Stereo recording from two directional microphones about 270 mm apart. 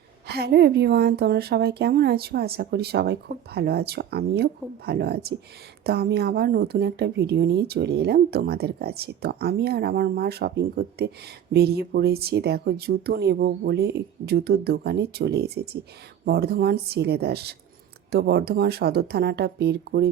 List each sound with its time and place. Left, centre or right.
0.3 s speech: right